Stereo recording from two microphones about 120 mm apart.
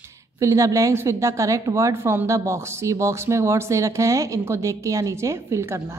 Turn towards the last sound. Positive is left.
turn(degrees=-25)  # may be behind; listen again after turning